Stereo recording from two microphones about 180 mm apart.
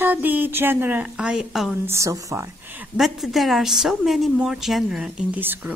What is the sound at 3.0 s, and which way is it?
A woman's voice, centre (ahead or behind).